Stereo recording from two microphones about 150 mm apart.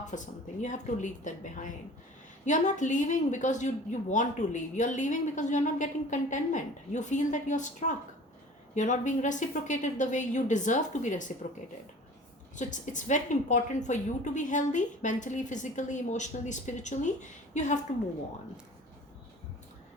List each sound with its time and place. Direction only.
0.1 s a woman's voice: 60° left (ahead or behind)
2.4 s a woman's voice: 55° left (ahead or behind)
12.5 s a woman's voice: 55° left (ahead or behind)